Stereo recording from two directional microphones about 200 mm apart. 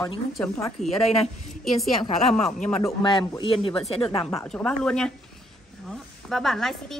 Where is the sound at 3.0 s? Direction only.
25° left (ahead or behind).